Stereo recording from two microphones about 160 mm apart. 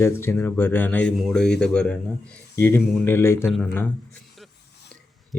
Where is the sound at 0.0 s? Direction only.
15° left (ahead or behind).